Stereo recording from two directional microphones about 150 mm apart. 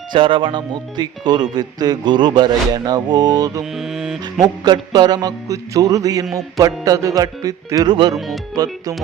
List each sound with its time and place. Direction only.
0.1 s speech: 35° right (ahead or behind)
3.8 s a sound: centre (ahead or behind)
4.4 s speech: 30° right (ahead or behind)